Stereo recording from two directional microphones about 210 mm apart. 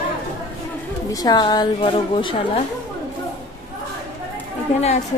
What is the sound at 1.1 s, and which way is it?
A woman's voice, 20° left (ahead or behind).